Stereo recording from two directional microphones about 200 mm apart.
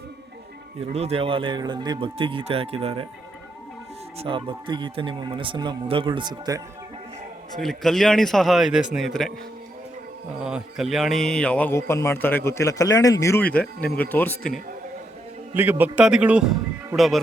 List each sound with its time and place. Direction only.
0.8 s speech: 30° right (ahead or behind)
4.2 s speech: 25° right (ahead or behind)
7.5 s a man's voice: centre (ahead or behind)
10.4 s a man's voice: 5° right (ahead or behind)
15.5 s a man's voice: 10° right (ahead or behind)